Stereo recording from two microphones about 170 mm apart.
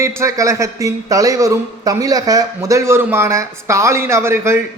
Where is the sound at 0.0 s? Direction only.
15° right (ahead or behind).